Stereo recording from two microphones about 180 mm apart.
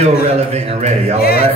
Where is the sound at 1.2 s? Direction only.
60° left (ahead or behind).